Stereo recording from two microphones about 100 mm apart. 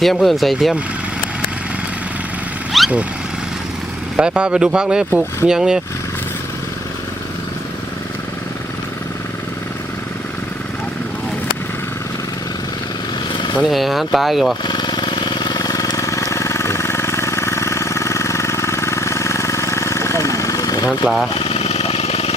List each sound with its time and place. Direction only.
0.0 s speech: centre (ahead or behind)
2.7 s vehicle: centre (ahead or behind)
4.2 s speech: 10° right (ahead or behind)
13.3 s vehicle: 50° left (ahead or behind)
13.7 s speech: centre (ahead or behind)
14.6 s vehicle: 45° left (ahead or behind)
21.3 s a sound: 90° left